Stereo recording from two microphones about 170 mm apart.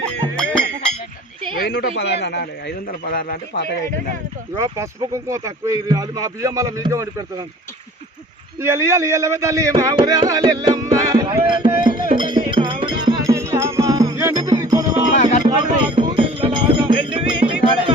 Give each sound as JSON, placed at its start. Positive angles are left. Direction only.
{"t": 1.5, "sound": "a man's voice", "side_deg": 75}
{"t": 2.0, "sound": "a man's voice", "side_deg": 85}
{"t": 4.5, "sound": "speech", "side_deg": -20}
{"t": 8.6, "sound": "a man's voice", "side_deg": -15}
{"t": 9.9, "sound": "music", "side_deg": -25}
{"t": 15.2, "sound": "music", "side_deg": 45}
{"t": 15.4, "sound": "music", "side_deg": -25}